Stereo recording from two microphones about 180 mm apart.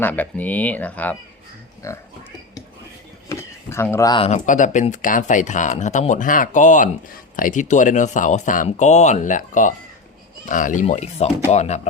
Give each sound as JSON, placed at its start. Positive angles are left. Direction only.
{"t": 0.0, "sound": "speech", "side_deg": 10}
{"t": 3.2, "sound": "a sound", "side_deg": 15}
{"t": 3.9, "sound": "speech", "side_deg": 25}
{"t": 4.3, "sound": "speech", "side_deg": 45}